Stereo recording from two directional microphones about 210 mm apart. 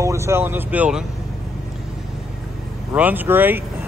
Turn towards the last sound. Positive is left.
turn(degrees=-10)  # may be behind; listen again after turning